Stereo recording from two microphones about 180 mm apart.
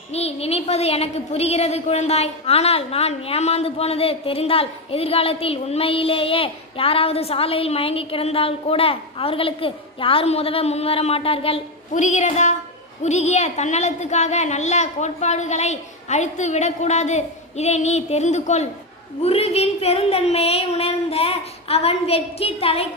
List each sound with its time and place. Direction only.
0.1 s a woman's voice: 35° left (ahead or behind)